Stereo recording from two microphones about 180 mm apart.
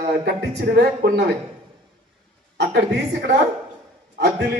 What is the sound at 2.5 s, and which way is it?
Speech, 65° right (ahead or behind).